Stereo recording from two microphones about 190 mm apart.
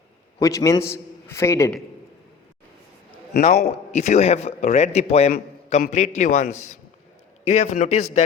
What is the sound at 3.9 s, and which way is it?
A man's voice, 35° left (ahead or behind).